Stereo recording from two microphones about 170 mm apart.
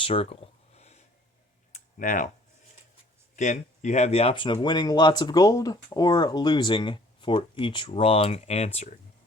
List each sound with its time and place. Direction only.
0.0 s a sound: 35° left (ahead or behind)
1.7 s computer keyboard: 50° left (ahead or behind)
3.3 s speech: 45° left (ahead or behind)